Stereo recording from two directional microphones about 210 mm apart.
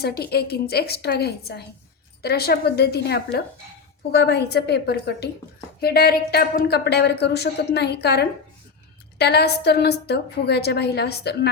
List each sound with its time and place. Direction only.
0.0 s a woman's voice: 50° left (ahead or behind)